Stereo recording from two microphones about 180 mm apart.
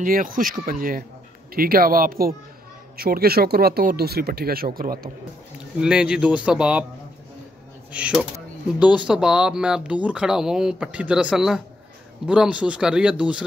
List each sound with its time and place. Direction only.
0.0 s speech: 50° right (ahead or behind)
5.8 s speech: 5° right (ahead or behind)
7.9 s speech: 5° right (ahead or behind)